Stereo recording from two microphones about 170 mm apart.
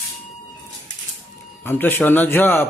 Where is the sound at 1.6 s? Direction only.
10° left (ahead or behind).